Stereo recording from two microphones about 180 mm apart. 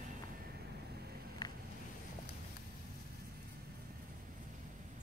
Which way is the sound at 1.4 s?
20° left (ahead or behind).